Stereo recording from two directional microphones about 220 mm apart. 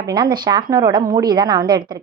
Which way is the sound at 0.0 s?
20° right (ahead or behind).